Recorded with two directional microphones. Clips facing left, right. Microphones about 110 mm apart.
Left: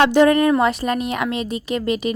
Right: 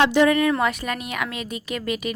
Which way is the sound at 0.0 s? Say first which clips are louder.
Left 4 dB; 45° left (ahead or behind).